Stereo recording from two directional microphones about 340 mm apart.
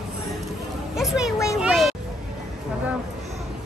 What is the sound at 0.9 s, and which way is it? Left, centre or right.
Speech, centre.